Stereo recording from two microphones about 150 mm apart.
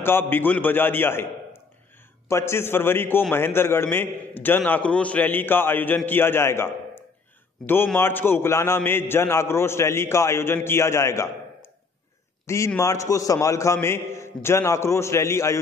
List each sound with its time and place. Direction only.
0.0 s a man's voice: 15° left (ahead or behind)